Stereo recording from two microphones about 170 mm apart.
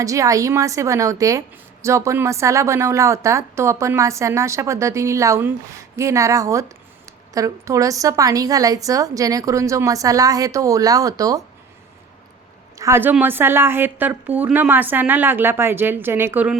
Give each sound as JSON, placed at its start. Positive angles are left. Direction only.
{"t": 0.0, "sound": "a woman's voice", "side_deg": -20}
{"t": 12.7, "sound": "a woman's voice", "side_deg": -15}